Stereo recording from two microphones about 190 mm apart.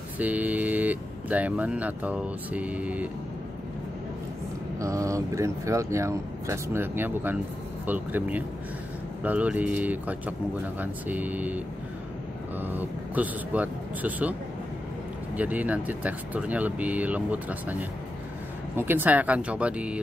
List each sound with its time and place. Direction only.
0.2 s speech: 10° right (ahead or behind)
4.7 s speech: 15° right (ahead or behind)
15.3 s speech: 10° right (ahead or behind)